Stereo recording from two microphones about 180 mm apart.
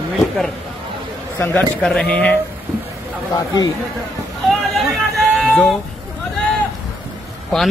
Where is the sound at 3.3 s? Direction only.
20° left (ahead or behind).